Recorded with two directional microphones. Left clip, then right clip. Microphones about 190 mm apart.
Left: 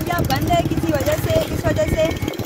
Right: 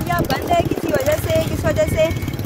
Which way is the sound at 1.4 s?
20° right (ahead or behind).